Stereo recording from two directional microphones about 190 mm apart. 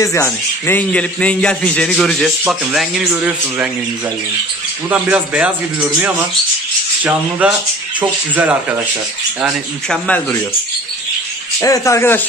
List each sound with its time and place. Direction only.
0.0 s a man's voice: 15° left (ahead or behind); by 3.7 s 5° right (ahead or behind)
4.8 s a man's voice: 10° right (ahead or behind)
9.4 s speech: 5° left (ahead or behind)
11.6 s a man's voice: 15° left (ahead or behind)